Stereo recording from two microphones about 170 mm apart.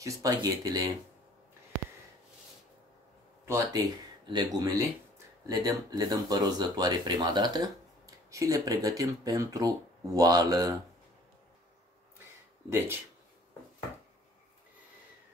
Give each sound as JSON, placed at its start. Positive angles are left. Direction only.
{"t": 0.0, "sound": "speech", "side_deg": -20}
{"t": 3.4, "sound": "speech", "side_deg": -20}
{"t": 12.6, "sound": "speech", "side_deg": -15}